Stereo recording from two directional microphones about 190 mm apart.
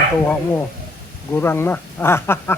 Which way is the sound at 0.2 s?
10° left (ahead or behind).